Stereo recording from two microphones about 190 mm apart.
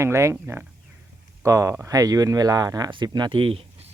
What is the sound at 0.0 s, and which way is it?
Speech, 15° right (ahead or behind).